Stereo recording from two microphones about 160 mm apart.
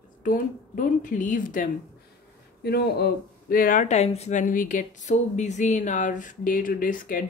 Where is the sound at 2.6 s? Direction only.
80° left.